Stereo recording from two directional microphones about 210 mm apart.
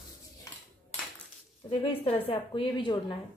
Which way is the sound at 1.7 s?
25° left (ahead or behind).